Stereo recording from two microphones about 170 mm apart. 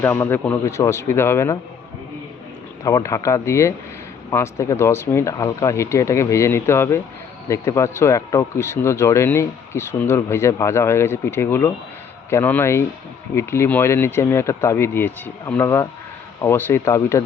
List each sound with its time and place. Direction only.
0.0 s speech: 15° left (ahead or behind)
2.8 s speech: 20° left (ahead or behind)